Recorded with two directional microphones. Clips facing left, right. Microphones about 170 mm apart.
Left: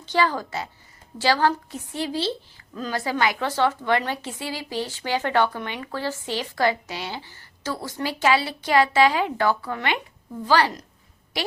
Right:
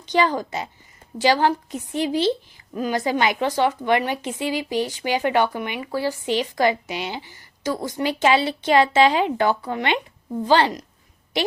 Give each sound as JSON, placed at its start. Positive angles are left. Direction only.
{"t": 0.0, "sound": "a woman's voice", "side_deg": -20}